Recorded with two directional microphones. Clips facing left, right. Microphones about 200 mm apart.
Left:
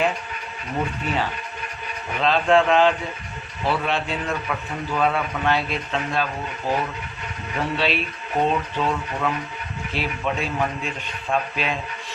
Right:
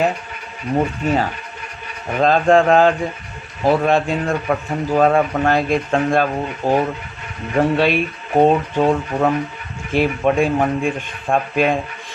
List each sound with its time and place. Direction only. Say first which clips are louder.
1.0 s a man's voice: right 6 dB; 45° right (ahead or behind)